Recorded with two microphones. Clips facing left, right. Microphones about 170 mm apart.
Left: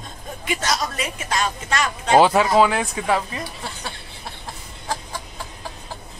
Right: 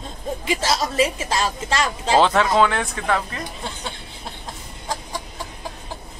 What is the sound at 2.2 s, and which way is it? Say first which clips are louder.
Speech: left 1 dB; 10° left (ahead or behind).